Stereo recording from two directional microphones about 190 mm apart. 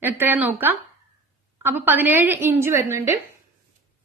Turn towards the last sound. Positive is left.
turn(degrees=-15)  # may be behind; listen again after turning